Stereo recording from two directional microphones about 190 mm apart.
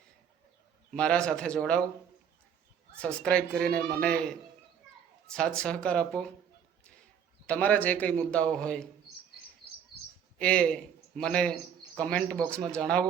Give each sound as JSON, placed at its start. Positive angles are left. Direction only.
{"t": 0.9, "sound": "a man's voice", "side_deg": 5}
{"t": 3.0, "sound": "a man's voice", "side_deg": 5}
{"t": 5.3, "sound": "a man's voice", "side_deg": 5}
{"t": 7.4, "sound": "a man's voice", "side_deg": 10}
{"t": 10.3, "sound": "a man's voice", "side_deg": 5}